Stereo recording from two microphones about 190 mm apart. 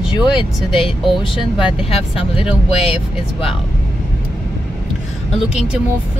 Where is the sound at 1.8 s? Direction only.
30° left (ahead or behind).